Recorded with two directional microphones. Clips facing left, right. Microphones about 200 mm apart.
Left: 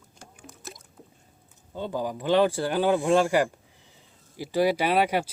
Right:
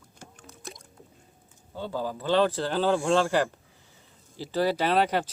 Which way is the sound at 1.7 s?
15° left (ahead or behind).